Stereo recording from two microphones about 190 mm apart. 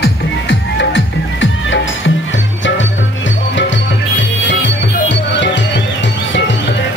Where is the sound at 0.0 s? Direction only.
80° left.